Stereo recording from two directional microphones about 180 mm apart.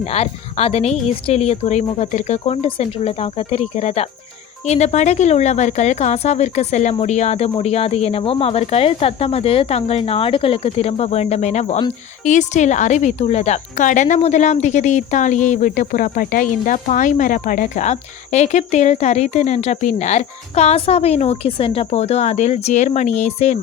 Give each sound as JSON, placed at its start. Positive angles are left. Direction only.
{"t": 0.0, "sound": "a woman's voice", "side_deg": 35}